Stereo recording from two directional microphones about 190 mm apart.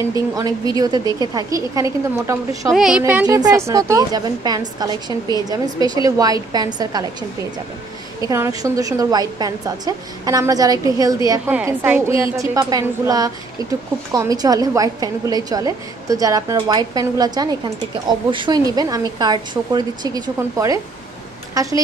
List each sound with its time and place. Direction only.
0.4 s a woman's voice: 20° right (ahead or behind)
2.7 s a woman's voice: centre (ahead or behind)
3.3 s a woman's voice: 20° right (ahead or behind)
8.3 s a woman's voice: 15° right (ahead or behind)